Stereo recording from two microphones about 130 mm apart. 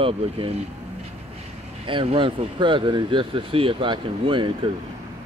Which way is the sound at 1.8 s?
40° right (ahead or behind).